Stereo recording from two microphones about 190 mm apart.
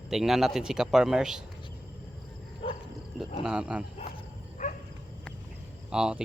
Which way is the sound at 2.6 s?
30° left (ahead or behind).